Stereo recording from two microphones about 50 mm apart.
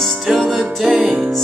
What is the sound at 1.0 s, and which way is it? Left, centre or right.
Music, centre.